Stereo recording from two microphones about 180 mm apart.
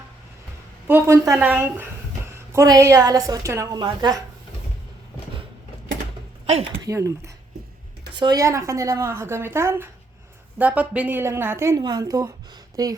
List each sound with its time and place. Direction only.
0.9 s a woman's voice: 15° right (ahead or behind)
6.4 s a sound: 35° right (ahead or behind)
6.8 s a woman's voice: 15° right (ahead or behind)